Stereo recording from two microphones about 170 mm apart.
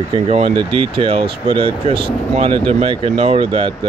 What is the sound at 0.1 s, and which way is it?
Speech, 40° right (ahead or behind).